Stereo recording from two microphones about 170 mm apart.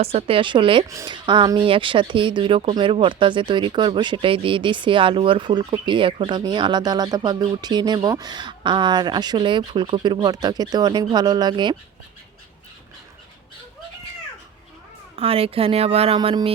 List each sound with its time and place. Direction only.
0.0 s a woman's voice: 35° right (ahead or behind)
15.1 s a woman's voice: 35° right (ahead or behind)